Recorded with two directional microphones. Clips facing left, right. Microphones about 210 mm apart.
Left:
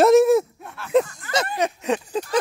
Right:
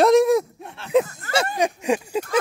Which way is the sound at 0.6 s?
25° right (ahead or behind).